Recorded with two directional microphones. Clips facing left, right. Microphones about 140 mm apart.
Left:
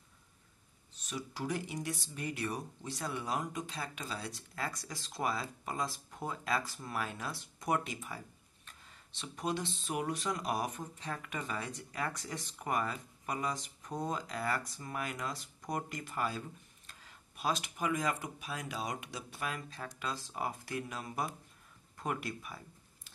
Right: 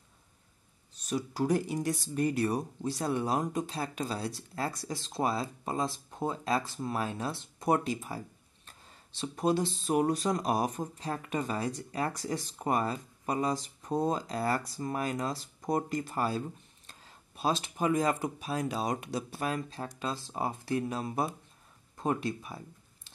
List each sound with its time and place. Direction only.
0.9 s speech: 40° right (ahead or behind)